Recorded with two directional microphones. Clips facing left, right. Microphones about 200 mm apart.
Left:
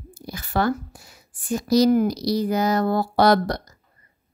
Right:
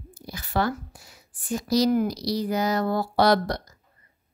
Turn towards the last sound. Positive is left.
turn(degrees=50)  # may be behind; listen again after turning